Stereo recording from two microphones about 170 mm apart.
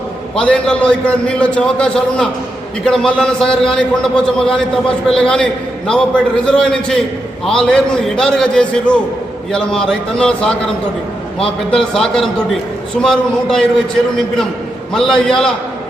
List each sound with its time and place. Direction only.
0.3 s a man's voice: 5° left (ahead or behind)
11.7 s a man's voice: 5° left (ahead or behind)
14.9 s a man's voice: 5° left (ahead or behind)